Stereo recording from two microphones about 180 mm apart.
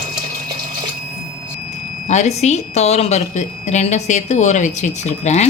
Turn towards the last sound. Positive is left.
turn(degrees=40)  # may be behind; listen again after turning